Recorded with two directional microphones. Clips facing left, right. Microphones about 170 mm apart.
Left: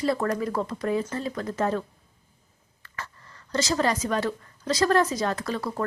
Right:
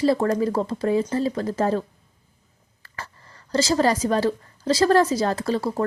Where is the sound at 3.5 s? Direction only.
30° right (ahead or behind).